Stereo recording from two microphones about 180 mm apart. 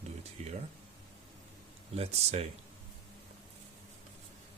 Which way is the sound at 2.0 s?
35° right (ahead or behind).